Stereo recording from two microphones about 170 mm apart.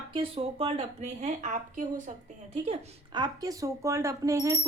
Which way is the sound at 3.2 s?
20° right (ahead or behind).